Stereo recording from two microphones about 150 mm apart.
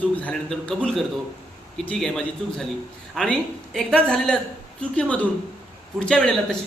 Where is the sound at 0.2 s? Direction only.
10° left (ahead or behind).